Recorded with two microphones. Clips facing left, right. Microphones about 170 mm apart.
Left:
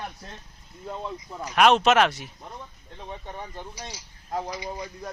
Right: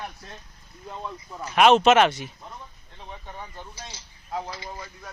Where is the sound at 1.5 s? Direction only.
Centre (ahead or behind).